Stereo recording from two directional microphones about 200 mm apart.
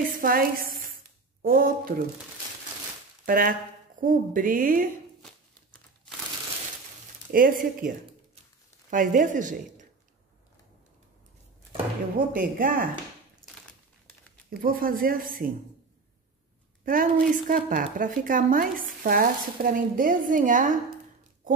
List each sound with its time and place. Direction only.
0.2 s a woman's voice: 45° right (ahead or behind)
3.3 s speech: 45° right (ahead or behind)
7.3 s speech: 45° right (ahead or behind)
8.9 s a woman's voice: 40° right (ahead or behind)
12.3 s speech: 45° right (ahead or behind)
14.5 s speech: 45° right (ahead or behind)
16.8 s speech: 45° right (ahead or behind)